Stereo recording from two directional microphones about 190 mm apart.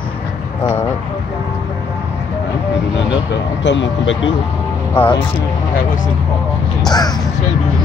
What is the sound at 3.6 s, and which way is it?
Speech, 75° left (ahead or behind).